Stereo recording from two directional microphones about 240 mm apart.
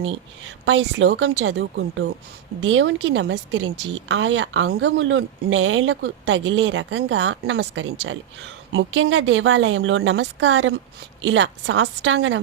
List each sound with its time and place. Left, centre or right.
0.0 s a woman's voice: right